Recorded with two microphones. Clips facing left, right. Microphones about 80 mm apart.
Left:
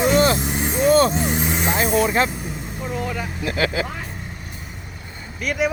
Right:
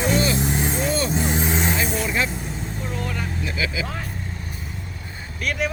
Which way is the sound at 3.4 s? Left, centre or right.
Left.